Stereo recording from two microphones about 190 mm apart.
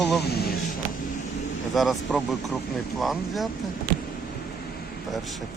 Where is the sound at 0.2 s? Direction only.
60° left (ahead or behind).